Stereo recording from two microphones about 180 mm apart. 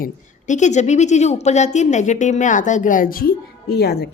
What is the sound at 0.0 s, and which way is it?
A woman's voice, 45° left (ahead or behind).